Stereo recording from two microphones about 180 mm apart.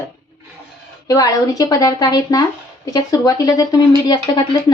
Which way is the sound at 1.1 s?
20° left (ahead or behind).